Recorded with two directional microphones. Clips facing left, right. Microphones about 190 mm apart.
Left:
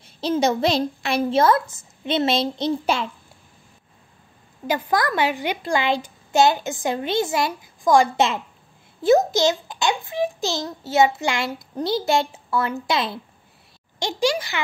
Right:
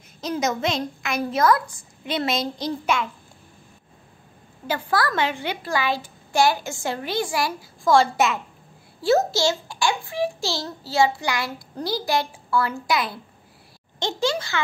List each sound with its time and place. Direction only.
0.2 s a child's voice: 30° left (ahead or behind)
4.6 s a child's voice: 15° left (ahead or behind)
13.9 s a child's voice: 15° left (ahead or behind)